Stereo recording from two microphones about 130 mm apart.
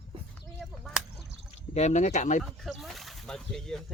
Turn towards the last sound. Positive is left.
turn(degrees=5)  # may be behind; listen again after turning